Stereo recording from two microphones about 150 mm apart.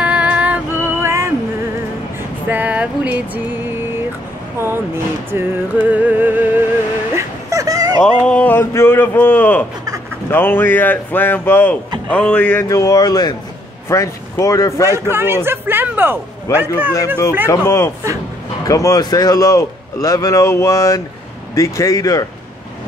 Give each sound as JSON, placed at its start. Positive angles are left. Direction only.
{"t": 0.0, "sound": "music", "side_deg": -10}
{"t": 2.4, "sound": "a sound", "side_deg": -10}
{"t": 4.6, "sound": "music", "side_deg": -15}
{"t": 7.2, "sound": "a sound", "side_deg": -20}
{"t": 8.0, "sound": "speech", "side_deg": 10}
{"t": 12.6, "sound": "a man's voice", "side_deg": 25}
{"t": 14.9, "sound": "a man's voice", "side_deg": -15}
{"t": 17.5, "sound": "a man's voice", "side_deg": 20}